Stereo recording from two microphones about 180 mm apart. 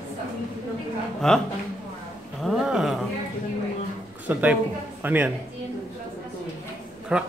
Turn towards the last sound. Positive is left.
turn(degrees=-5)  # may be behind; listen again after turning